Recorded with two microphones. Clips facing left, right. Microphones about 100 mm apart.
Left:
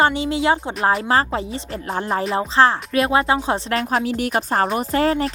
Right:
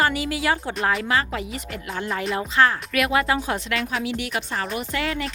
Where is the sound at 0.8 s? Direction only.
35° left (ahead or behind).